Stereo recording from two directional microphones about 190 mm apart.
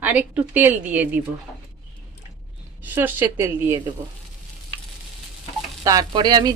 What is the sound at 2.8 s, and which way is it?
Speech, 10° right (ahead or behind).